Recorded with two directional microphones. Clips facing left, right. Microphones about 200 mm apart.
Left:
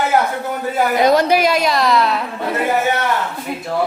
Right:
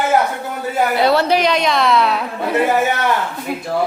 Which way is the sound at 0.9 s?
15° left (ahead or behind).